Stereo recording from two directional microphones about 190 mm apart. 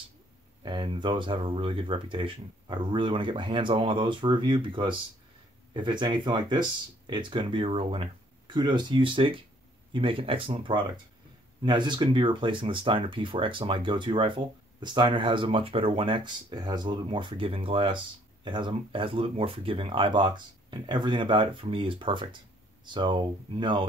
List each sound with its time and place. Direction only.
0.7 s speech: 25° right (ahead or behind)